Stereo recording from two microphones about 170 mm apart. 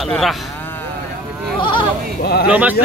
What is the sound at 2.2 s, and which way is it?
Speech, 70° left (ahead or behind).